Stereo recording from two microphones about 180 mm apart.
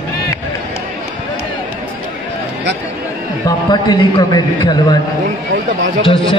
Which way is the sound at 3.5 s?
25° left (ahead or behind).